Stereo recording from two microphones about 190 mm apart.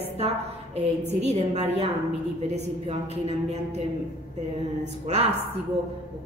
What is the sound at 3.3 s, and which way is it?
Speech, 35° right (ahead or behind).